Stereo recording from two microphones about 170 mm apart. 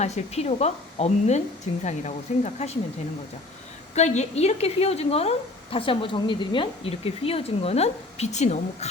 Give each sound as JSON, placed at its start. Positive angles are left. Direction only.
{"t": 0.0, "sound": "a woman's voice", "side_deg": 40}
{"t": 3.9, "sound": "a woman's voice", "side_deg": 40}